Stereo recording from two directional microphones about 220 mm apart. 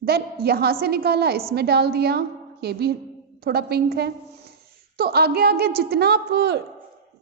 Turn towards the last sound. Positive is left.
turn(degrees=-50)  # may be behind; listen again after turning